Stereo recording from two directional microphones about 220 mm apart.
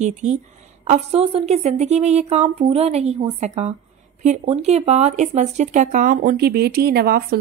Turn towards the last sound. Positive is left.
turn(degrees=-45)  # may be behind; listen again after turning